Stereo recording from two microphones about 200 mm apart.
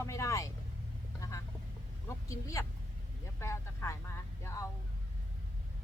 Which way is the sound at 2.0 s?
15° left (ahead or behind).